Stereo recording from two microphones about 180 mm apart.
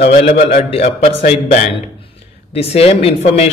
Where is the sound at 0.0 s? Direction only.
35° left (ahead or behind).